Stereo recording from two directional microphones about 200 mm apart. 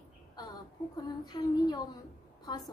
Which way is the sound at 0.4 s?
20° left (ahead or behind).